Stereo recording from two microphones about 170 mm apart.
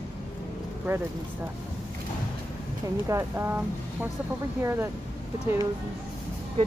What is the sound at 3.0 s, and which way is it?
Speech, 15° right (ahead or behind).